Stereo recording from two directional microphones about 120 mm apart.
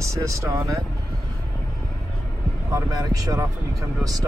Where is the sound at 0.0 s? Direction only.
25° right (ahead or behind).